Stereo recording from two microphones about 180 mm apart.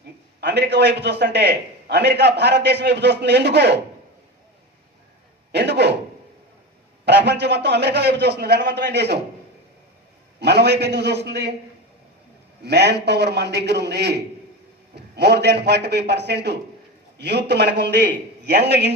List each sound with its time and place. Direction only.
0.3 s a man's voice: 70° right (ahead or behind)
5.5 s a sound: 70° right (ahead or behind)
7.0 s a man's voice: 70° right (ahead or behind)
10.4 s a man's voice: 65° right (ahead or behind)
12.6 s a man's voice: 70° right (ahead or behind)